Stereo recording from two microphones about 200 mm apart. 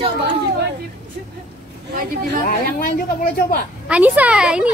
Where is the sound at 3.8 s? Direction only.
5° right (ahead or behind).